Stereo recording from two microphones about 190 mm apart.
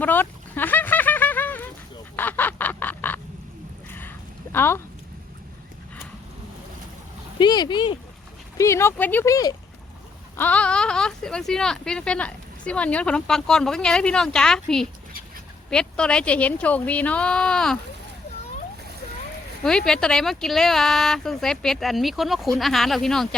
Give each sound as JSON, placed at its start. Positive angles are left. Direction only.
{"t": 0.0, "sound": "a sound", "side_deg": 10}
{"t": 2.1, "sound": "goose", "side_deg": 10}
{"t": 4.5, "sound": "speech", "side_deg": 10}
{"t": 7.3, "sound": "speech", "side_deg": 25}
{"t": 19.6, "sound": "speech", "side_deg": 5}